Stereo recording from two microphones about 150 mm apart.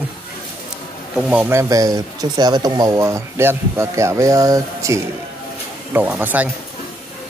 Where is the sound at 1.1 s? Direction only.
5° right (ahead or behind).